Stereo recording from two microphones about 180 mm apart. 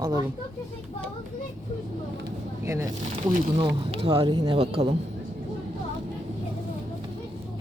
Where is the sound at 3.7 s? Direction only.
30° right (ahead or behind).